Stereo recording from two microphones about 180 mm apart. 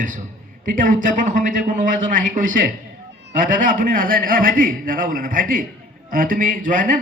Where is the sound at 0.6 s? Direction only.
50° right (ahead or behind).